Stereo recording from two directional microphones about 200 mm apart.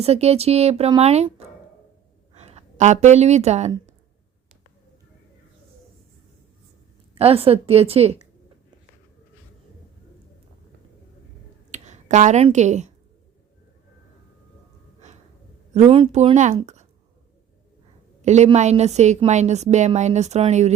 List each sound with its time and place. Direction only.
0.0 s a woman's voice: 30° right (ahead or behind)
7.2 s a woman's voice: 30° right (ahead or behind)
11.7 s speech: 35° right (ahead or behind)
15.7 s a woman's voice: 30° right (ahead or behind)
18.2 s a woman's voice: 35° right (ahead or behind)